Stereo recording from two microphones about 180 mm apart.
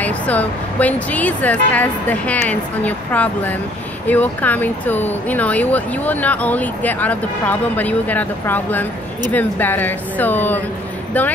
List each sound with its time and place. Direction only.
0.0 s speech: 10° left (ahead or behind)